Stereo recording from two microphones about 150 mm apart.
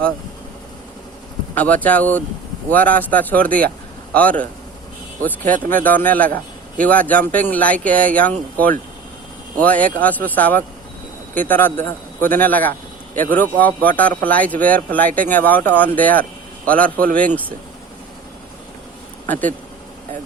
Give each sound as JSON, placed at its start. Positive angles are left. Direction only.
{"t": 1.5, "sound": "speech", "side_deg": 10}
{"t": 5.4, "sound": "speech", "side_deg": -60}
{"t": 5.6, "sound": "speech", "side_deg": 10}
{"t": 9.6, "sound": "speech", "side_deg": 10}